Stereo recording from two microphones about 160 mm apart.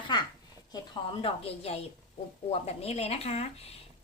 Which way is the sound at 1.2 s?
40° left (ahead or behind).